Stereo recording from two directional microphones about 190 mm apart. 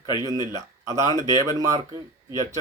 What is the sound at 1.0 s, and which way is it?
Speech, 15° right (ahead or behind).